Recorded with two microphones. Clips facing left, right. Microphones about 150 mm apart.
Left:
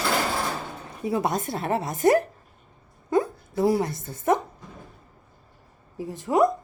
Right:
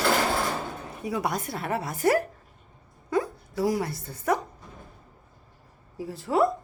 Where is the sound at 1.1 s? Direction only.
25° left (ahead or behind).